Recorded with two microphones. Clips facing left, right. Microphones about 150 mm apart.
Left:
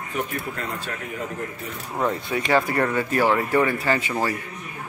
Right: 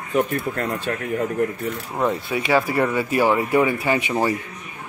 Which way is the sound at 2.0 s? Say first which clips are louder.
Right 1 dB; 5° right (ahead or behind).